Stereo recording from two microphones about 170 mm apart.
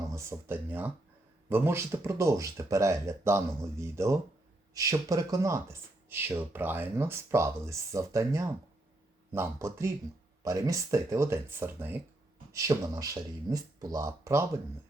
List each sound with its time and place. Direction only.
0.2 s speech: 15° right (ahead or behind)